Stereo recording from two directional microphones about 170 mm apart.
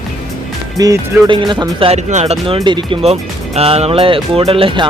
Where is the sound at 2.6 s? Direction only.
25° right (ahead or behind).